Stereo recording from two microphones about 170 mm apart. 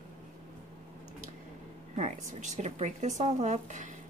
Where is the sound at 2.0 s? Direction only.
45° right (ahead or behind).